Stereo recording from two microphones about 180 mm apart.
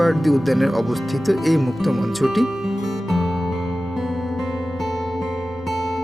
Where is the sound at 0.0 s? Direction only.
Centre (ahead or behind).